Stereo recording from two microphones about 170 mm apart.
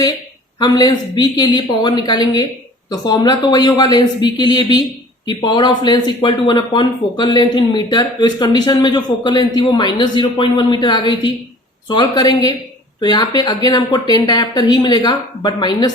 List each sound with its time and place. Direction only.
0.6 s speech: 25° left (ahead or behind)